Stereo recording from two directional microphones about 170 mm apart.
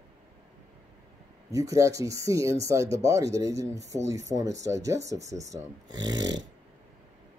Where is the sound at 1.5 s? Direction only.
20° right (ahead or behind).